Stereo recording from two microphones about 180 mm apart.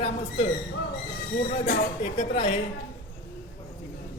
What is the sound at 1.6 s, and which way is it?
Speech, 55° left (ahead or behind).